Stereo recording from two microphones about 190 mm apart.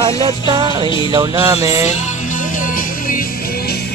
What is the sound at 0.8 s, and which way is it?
Music, 25° left (ahead or behind).